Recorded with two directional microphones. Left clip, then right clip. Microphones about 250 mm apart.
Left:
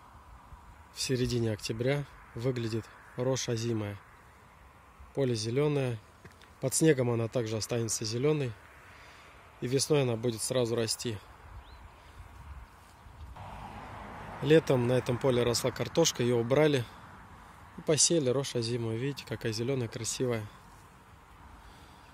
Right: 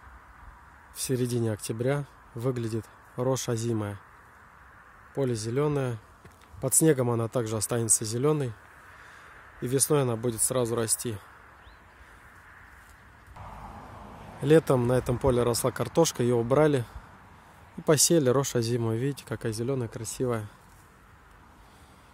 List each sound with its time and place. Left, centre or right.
0.9 s speech: centre
5.1 s speech: centre
9.6 s speech: centre
13.5 s a sound: centre
14.4 s speech: centre
17.8 s speech: right; by 20.4 s centre